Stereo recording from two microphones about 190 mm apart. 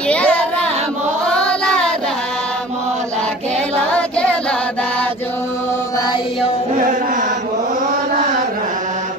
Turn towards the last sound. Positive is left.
turn(degrees=-45)  # may be behind; listen again after turning